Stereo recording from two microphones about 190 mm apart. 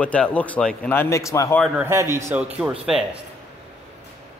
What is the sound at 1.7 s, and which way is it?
A man's voice, 15° right (ahead or behind).